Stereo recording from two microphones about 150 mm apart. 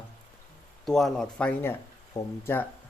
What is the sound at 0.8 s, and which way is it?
Speech, centre (ahead or behind).